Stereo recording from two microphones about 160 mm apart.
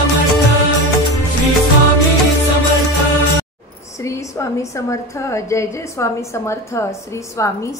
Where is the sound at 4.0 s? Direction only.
20° left (ahead or behind).